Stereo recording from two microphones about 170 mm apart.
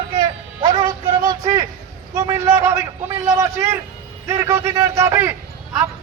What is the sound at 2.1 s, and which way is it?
A man's voice, 15° right (ahead or behind).